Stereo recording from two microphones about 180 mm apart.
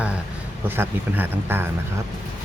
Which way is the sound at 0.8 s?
10° right (ahead or behind).